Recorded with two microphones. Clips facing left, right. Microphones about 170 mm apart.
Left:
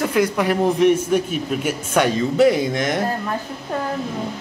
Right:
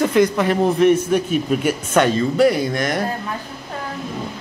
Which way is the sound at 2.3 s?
20° left (ahead or behind).